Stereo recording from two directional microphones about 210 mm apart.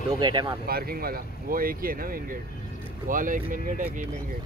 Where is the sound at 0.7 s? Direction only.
45° right (ahead or behind).